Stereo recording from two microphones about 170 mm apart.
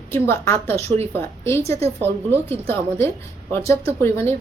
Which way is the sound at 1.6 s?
35° right (ahead or behind).